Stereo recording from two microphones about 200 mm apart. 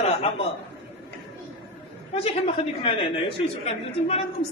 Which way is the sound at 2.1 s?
30° left (ahead or behind).